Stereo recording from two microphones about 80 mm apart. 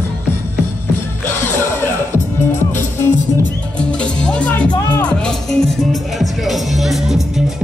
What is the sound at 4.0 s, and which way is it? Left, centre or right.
Music, centre.